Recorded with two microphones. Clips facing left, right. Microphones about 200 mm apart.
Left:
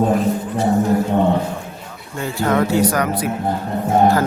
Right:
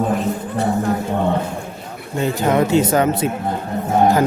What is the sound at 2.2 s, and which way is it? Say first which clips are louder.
Speech: right 2 dB; 20° right (ahead or behind).